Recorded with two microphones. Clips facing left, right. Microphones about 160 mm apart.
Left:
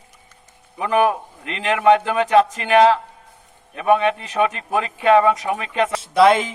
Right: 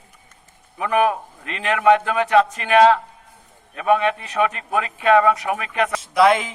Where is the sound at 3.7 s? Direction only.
25° left (ahead or behind).